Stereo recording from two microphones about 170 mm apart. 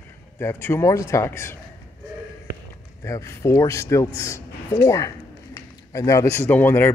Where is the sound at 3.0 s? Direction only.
15° left (ahead or behind).